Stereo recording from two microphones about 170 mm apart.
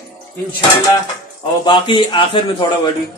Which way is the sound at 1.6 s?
30° left (ahead or behind).